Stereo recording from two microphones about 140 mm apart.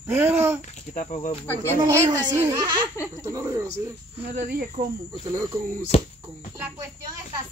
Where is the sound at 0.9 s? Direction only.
65° left (ahead or behind).